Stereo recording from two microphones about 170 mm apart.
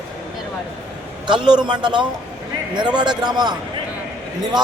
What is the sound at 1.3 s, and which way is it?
Speech, 25° right (ahead or behind).